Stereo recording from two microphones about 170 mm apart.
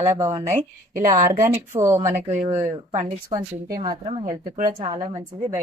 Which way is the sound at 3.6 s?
60° right (ahead or behind).